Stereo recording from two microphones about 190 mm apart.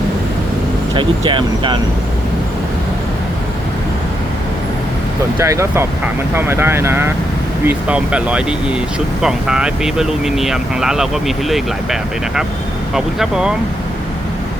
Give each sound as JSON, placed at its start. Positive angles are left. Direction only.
{"t": 0.9, "sound": "speech", "side_deg": -25}
{"t": 5.4, "sound": "speech", "side_deg": -15}